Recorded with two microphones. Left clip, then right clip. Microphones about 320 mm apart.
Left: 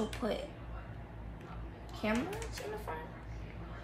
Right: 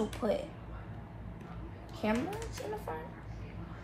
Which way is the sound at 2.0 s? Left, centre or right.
Centre.